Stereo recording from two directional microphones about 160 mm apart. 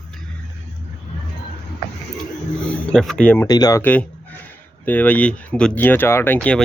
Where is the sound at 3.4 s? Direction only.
25° left (ahead or behind).